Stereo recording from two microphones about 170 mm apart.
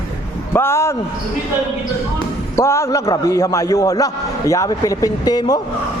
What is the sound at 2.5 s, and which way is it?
A man's voice, 15° left (ahead or behind).